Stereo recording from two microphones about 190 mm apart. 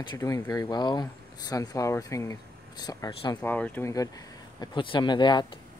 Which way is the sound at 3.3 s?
10° left (ahead or behind).